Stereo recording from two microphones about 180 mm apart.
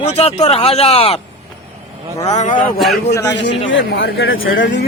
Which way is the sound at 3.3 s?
75° left (ahead or behind).